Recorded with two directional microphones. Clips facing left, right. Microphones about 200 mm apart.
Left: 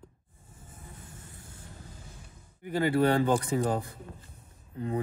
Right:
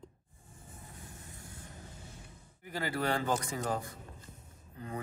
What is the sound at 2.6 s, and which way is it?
A man's voice, 25° left (ahead or behind).